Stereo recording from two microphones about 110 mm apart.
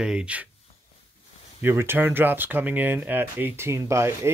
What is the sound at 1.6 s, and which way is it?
Speech, 20° right (ahead or behind).